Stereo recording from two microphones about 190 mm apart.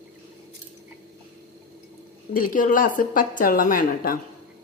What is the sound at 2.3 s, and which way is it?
A woman's voice, 50° left (ahead or behind).